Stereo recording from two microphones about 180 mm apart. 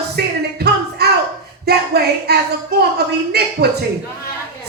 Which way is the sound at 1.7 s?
65° right (ahead or behind).